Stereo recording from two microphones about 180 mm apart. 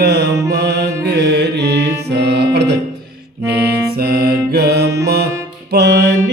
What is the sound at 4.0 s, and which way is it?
Music, 60° right (ahead or behind).